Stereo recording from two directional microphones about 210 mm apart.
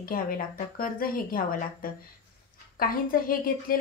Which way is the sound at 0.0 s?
45° left (ahead or behind).